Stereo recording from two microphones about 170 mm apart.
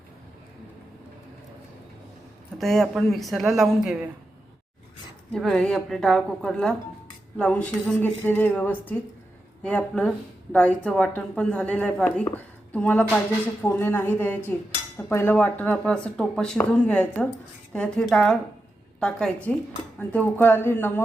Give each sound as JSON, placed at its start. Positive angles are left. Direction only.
{"t": 2.6, "sound": "a woman's voice", "side_deg": 0}
{"t": 5.3, "sound": "a woman's voice", "side_deg": 5}